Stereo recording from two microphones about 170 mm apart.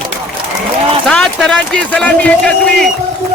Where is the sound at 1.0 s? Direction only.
5° left (ahead or behind).